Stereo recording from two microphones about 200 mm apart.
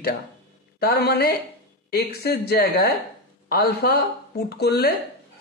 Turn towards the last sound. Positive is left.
turn(degrees=55)  # may be behind; listen again after turning